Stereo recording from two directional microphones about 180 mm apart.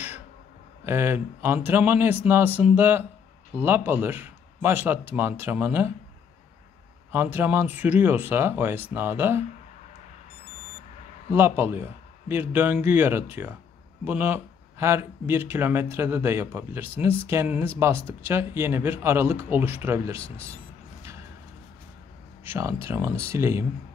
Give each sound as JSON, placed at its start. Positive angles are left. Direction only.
{"t": 0.8, "sound": "speech", "side_deg": -15}
{"t": 7.1, "sound": "speech", "side_deg": -10}
{"t": 11.3, "sound": "speech", "side_deg": -15}
{"t": 22.4, "sound": "speech", "side_deg": -15}